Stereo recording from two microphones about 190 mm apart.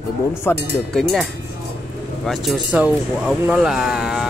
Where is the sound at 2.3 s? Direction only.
Centre (ahead or behind).